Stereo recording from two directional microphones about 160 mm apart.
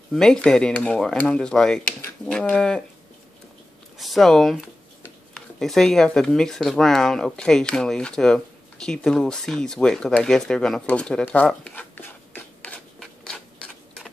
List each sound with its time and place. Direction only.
0.1 s speech: 5° left (ahead or behind)
4.0 s speech: centre (ahead or behind)
11.4 s rub: 10° left (ahead or behind)